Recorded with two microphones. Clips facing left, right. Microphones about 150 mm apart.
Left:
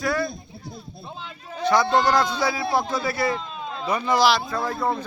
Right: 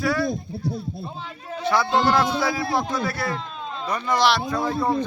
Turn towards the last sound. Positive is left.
turn(degrees=5)  # may be behind; listen again after turning